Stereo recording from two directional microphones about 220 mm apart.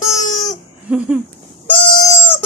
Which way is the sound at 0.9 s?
5° right (ahead or behind).